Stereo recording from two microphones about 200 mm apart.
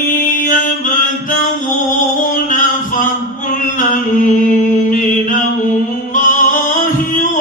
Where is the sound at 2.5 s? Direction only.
40° left (ahead or behind).